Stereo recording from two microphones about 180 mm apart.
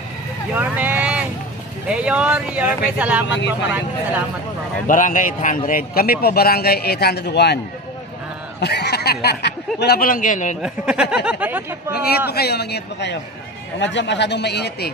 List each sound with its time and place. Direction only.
0.5 s vehicle: 10° right (ahead or behind)
1.9 s speech: 5° right (ahead or behind)
4.8 s a man's voice: 45° left (ahead or behind)
10.6 s speech: 5° right (ahead or behind)
11.9 s speech: 60° left (ahead or behind)
13.7 s speech: 80° left; by 14.9 s 65° left (ahead or behind)